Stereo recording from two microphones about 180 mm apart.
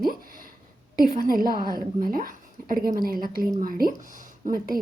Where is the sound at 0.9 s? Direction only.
55° right (ahead or behind).